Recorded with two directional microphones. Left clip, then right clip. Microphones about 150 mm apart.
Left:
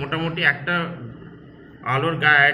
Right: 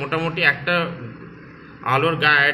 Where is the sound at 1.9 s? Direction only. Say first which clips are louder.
Even; 30° right (ahead or behind).